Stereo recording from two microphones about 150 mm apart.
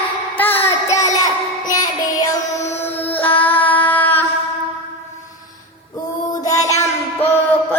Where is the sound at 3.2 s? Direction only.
10° left (ahead or behind).